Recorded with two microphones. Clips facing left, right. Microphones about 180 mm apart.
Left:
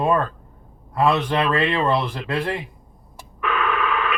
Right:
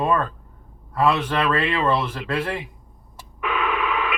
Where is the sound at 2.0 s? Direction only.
15° left (ahead or behind).